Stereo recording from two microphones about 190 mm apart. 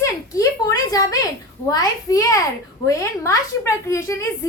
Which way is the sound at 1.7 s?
20° left (ahead or behind).